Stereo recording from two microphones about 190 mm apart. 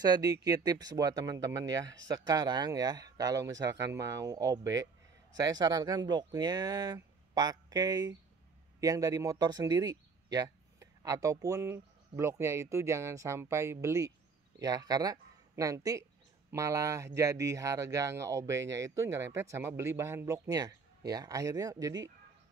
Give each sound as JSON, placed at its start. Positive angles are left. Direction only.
{"t": 0.0, "sound": "speech", "side_deg": -20}